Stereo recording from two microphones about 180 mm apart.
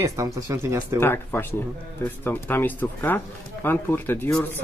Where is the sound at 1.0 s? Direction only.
10° left (ahead or behind).